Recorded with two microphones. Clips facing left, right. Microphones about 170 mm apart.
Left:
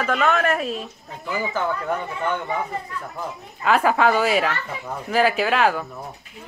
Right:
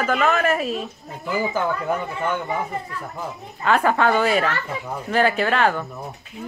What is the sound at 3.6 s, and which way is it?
Speech, 5° left (ahead or behind).